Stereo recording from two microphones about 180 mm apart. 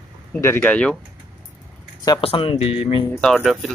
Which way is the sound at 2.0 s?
30° left (ahead or behind).